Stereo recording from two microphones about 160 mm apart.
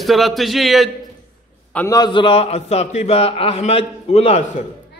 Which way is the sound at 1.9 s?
25° left (ahead or behind).